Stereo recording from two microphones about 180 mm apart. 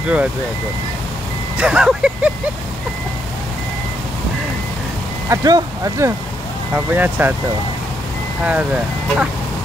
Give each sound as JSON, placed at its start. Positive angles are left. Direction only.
{"t": 1.6, "sound": "speech", "side_deg": -5}
{"t": 5.3, "sound": "speech", "side_deg": -20}
{"t": 8.5, "sound": "speech", "side_deg": -10}